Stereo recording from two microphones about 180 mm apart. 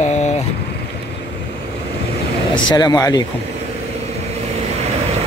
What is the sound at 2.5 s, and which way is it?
Speech, 20° left (ahead or behind).